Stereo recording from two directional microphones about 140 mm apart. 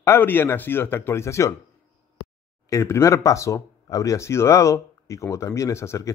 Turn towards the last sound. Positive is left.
turn(degrees=20)  # may be behind; listen again after turning